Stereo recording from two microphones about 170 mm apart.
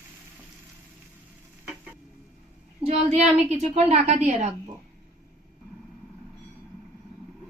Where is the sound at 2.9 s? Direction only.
40° right (ahead or behind).